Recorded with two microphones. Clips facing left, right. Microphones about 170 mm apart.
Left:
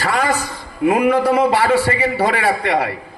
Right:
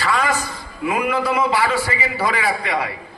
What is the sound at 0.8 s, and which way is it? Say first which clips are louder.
A man's voice: left 6 dB; 65° left (ahead or behind).